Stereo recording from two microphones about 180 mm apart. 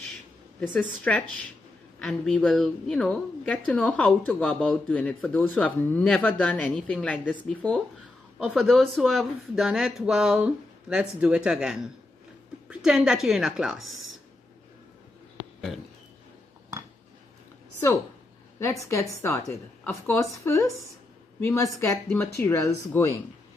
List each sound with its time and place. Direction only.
0.7 s a woman's voice: 5° left (ahead or behind)
18.6 s a woman's voice: 15° left (ahead or behind)